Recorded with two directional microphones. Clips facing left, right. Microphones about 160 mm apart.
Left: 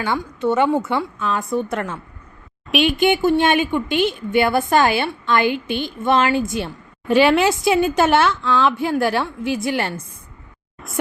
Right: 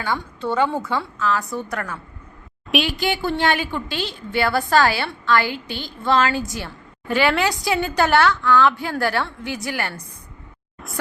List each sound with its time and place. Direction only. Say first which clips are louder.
0.0 s a woman's voice: left 4 dB; 20° left (ahead or behind)